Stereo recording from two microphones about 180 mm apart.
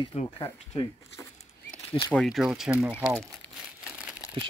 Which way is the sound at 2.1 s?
Centre (ahead or behind).